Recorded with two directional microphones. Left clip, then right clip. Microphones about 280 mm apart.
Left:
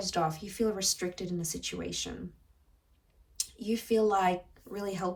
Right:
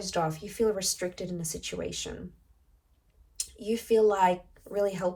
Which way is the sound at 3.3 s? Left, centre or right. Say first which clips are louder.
Right 2 dB; centre.